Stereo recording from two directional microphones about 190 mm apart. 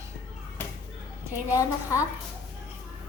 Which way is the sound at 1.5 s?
15° left (ahead or behind).